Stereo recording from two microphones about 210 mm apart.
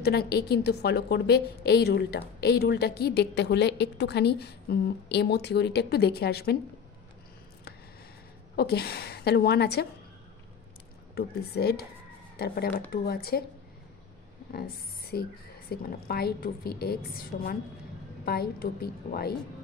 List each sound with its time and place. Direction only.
0.0 s a woman's voice: 50° left (ahead or behind)
8.5 s a woman's voice: 50° left (ahead or behind)
11.1 s a woman's voice: 50° left (ahead or behind)
14.5 s a woman's voice: 45° left (ahead or behind)